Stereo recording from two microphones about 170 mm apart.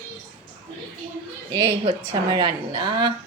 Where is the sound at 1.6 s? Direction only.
35° right (ahead or behind).